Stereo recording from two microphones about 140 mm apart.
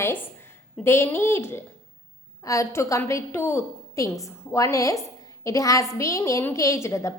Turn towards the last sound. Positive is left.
turn(degrees=20)  # may be behind; listen again after turning